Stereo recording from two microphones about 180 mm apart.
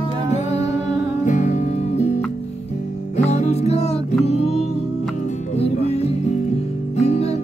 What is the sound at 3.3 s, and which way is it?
Music, 35° left (ahead or behind).